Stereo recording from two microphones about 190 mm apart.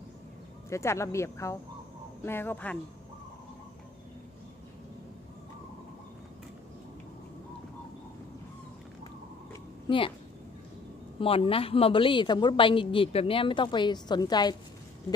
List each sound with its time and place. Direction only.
0.7 s speech: 15° left (ahead or behind)
9.8 s speech: 25° left (ahead or behind)
11.1 s a woman's voice: 30° left (ahead or behind)